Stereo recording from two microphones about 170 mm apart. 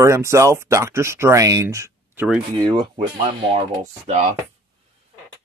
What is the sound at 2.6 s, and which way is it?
Speech, 25° right (ahead or behind).